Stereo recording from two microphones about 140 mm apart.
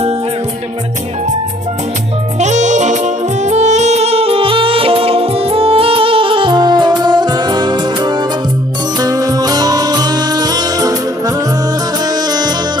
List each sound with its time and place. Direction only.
2.4 s music: 60° right (ahead or behind); by 11.3 s 25° right (ahead or behind)